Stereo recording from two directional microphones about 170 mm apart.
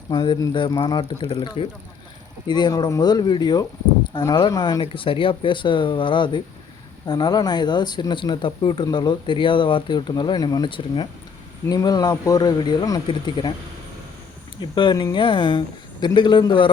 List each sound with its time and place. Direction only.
0.1 s speech: 25° left (ahead or behind)
14.6 s speech: 25° left (ahead or behind)